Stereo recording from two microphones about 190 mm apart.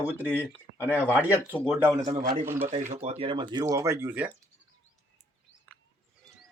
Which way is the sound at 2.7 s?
40° right (ahead or behind).